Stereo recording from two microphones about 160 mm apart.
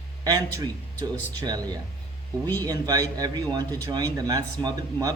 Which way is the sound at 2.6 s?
25° right (ahead or behind).